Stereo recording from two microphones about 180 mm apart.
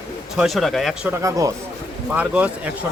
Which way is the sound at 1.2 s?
15° right (ahead or behind).